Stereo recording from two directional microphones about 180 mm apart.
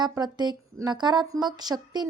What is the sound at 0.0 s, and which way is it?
A woman's voice, 25° right (ahead or behind).